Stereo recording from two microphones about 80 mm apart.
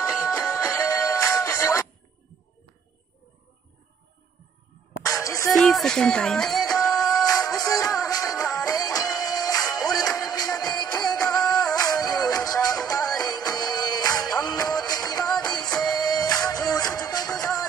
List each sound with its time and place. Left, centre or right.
0.2 s music: left
5.0 s music: left
5.5 s speech: centre
6.7 s music: left
15.5 s music: centre
15.8 s music: left